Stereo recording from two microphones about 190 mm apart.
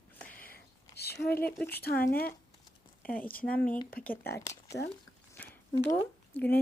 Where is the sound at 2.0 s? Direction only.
50° left (ahead or behind).